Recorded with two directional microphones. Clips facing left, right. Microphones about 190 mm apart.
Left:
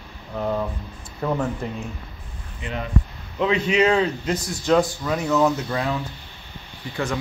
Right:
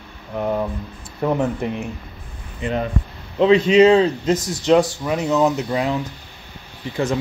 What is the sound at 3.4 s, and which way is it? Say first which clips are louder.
Speech: right 7 dB; 30° right (ahead or behind).